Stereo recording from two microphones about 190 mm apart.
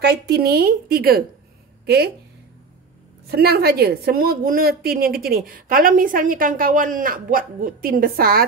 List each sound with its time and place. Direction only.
0.0 s a woman's voice: 60° right (ahead or behind)
3.3 s a woman's voice: 55° right (ahead or behind)